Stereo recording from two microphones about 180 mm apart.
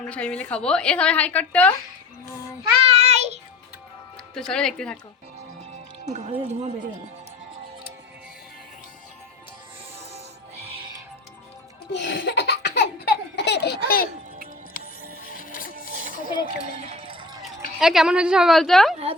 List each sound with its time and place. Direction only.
0.0 s a woman's voice: 5° left (ahead or behind)
2.8 s child singing: 35° right (ahead or behind)
4.4 s a woman's voice: 5° left (ahead or behind)
6.1 s speech: 40° right (ahead or behind)
11.9 s laughter: 75° left (ahead or behind); by 14.1 s 55° left (ahead or behind)
14.8 s music: 50° left (ahead or behind)
16.9 s run: 30° right (ahead or behind)
17.7 s a woman's voice: centre (ahead or behind)